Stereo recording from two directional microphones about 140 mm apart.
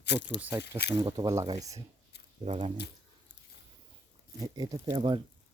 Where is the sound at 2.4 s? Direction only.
50° right (ahead or behind).